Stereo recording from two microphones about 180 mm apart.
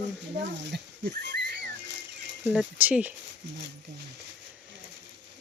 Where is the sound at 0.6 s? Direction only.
65° right (ahead or behind).